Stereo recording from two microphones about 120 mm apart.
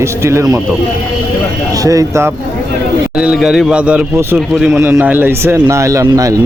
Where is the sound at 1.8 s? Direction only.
25° right (ahead or behind).